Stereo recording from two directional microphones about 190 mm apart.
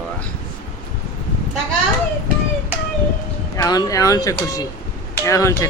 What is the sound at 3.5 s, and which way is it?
A man's voice, 20° left (ahead or behind).